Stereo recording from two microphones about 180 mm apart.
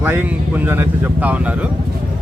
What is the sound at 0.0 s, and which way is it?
A man's voice, 10° right (ahead or behind).